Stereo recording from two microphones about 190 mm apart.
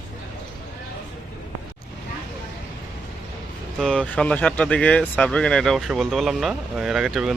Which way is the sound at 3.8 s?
5° left (ahead or behind).